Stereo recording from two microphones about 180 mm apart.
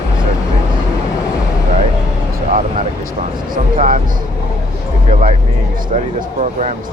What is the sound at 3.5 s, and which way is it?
Speech, 45° right (ahead or behind).